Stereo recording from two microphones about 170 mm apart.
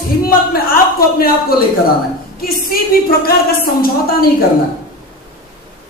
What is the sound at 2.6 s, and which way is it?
A woman's voice, 60° left (ahead or behind).